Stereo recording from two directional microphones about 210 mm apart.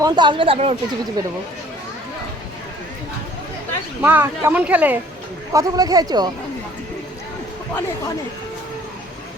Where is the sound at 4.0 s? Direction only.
10° right (ahead or behind).